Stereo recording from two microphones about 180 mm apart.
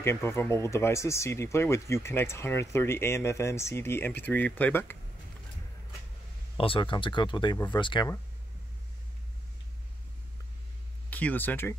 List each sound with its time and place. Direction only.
0.0 s speech: 15° left (ahead or behind)
6.5 s speech: 30° left (ahead or behind)
11.1 s speech: 10° left (ahead or behind)